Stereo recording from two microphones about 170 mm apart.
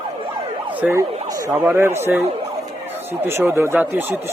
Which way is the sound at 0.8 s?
10° right (ahead or behind).